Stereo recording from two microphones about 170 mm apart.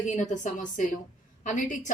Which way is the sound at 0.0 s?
45° left (ahead or behind).